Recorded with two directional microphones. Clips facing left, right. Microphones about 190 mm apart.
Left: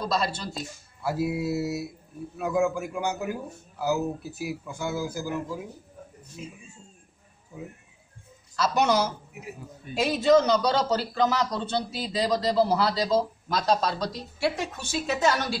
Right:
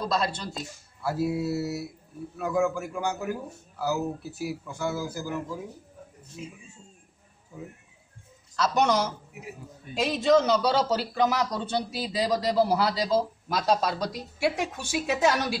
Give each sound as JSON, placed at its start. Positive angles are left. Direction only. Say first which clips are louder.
{"t": 0.0, "sound": "speech", "louder": "even", "side_deg": 0}
{"t": 1.0, "sound": "speech", "louder": "even", "side_deg": 15}
{"t": 8.5, "sound": "a man's voice", "louder": "left 1 dB", "side_deg": 5}